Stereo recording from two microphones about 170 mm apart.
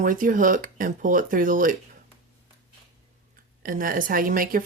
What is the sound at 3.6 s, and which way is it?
Speech, 55° right (ahead or behind).